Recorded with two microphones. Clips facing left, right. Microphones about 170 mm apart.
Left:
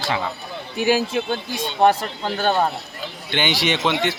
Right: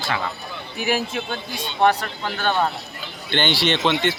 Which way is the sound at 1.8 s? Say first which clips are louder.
Left 2 dB; 40° left (ahead or behind).